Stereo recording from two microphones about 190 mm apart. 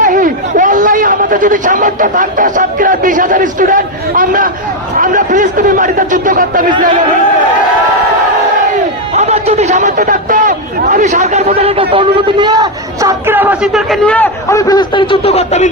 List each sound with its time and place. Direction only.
0.0 s a man's voice: 45° right (ahead or behind)
9.1 s a sound: 35° right (ahead or behind)
10.0 s a man's voice: 45° right (ahead or behind); by 12.5 s 25° right (ahead or behind)
13.0 s a man's voice: 15° right (ahead or behind); by 14.3 s 5° left (ahead or behind)
14.5 s a man's voice: 20° left (ahead or behind); by 15.7 s 35° left (ahead or behind)